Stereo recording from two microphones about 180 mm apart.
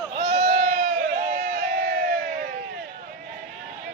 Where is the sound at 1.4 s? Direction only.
45° right (ahead or behind).